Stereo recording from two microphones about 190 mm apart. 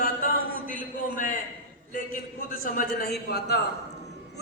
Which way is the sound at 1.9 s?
45° left (ahead or behind).